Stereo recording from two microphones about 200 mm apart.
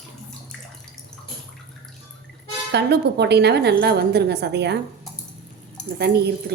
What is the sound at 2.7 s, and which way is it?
A woman's voice, 55° right (ahead or behind).